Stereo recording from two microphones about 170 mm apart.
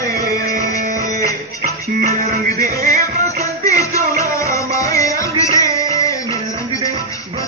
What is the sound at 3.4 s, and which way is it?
Music, 20° left (ahead or behind).